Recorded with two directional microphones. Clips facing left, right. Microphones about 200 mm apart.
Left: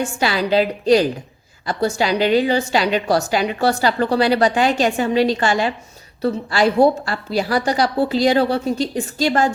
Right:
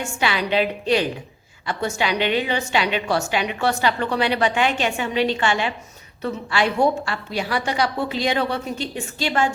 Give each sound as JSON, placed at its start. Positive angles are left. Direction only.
{"t": 0.0, "sound": "a woman's voice", "side_deg": 35}